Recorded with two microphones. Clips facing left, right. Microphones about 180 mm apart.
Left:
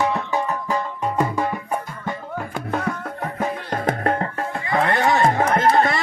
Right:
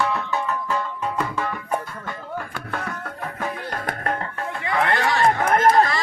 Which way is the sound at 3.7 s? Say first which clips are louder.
Left 9 dB; 25° left (ahead or behind).